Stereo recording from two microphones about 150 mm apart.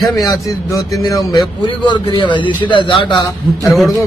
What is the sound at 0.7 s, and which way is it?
A man's voice, 20° left (ahead or behind).